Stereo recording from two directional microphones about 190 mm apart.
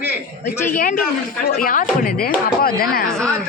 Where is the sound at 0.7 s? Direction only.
45° left (ahead or behind).